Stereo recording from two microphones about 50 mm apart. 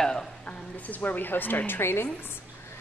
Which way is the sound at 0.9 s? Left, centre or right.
Left.